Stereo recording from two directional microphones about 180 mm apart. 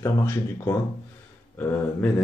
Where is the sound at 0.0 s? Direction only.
15° left (ahead or behind).